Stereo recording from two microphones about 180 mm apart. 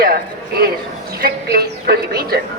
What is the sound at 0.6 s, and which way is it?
A woman's voice, 60° right (ahead or behind).